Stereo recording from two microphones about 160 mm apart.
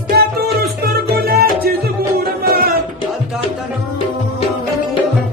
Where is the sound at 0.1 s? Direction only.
80° right.